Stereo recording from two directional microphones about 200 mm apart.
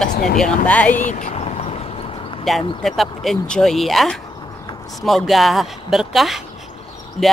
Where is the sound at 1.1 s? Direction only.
35° left (ahead or behind).